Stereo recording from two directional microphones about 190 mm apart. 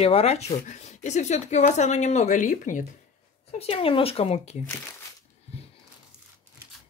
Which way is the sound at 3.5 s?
30° left (ahead or behind).